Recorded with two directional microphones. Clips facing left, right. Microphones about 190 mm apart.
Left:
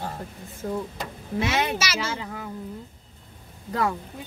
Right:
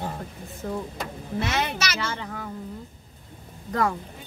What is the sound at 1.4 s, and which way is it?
Speech, 5° left (ahead or behind).